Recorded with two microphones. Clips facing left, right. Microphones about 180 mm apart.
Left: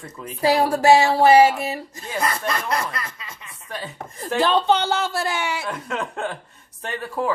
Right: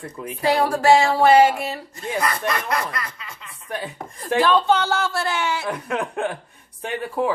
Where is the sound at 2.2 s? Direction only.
30° left (ahead or behind).